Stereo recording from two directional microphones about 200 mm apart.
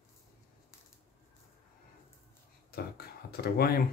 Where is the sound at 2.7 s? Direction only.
50° left (ahead or behind).